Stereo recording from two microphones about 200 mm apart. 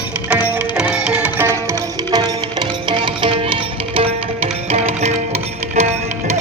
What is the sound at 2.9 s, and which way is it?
Music, 25° right (ahead or behind).